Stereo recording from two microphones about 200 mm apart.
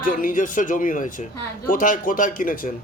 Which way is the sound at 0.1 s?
40° left (ahead or behind).